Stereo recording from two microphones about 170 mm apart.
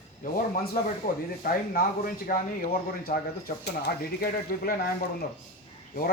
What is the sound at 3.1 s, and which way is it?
Speech, 40° left (ahead or behind).